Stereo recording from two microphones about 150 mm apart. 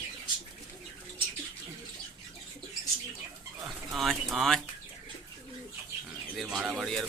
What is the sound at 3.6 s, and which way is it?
Speech, centre (ahead or behind).